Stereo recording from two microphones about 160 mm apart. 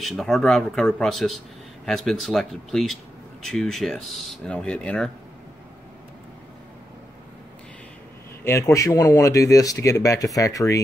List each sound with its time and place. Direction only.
0.0 s speech: centre (ahead or behind)
8.5 s speech: 20° left (ahead or behind)